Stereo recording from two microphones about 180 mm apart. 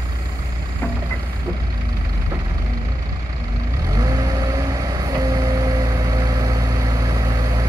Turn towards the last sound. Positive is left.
turn(degrees=-20)  # may be behind; listen again after turning